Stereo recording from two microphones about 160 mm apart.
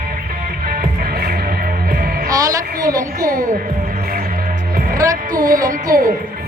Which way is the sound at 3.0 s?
60° right (ahead or behind).